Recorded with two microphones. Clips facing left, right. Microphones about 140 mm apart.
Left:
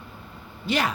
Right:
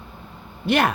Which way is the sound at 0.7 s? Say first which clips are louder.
Right 5 dB; 55° right (ahead or behind).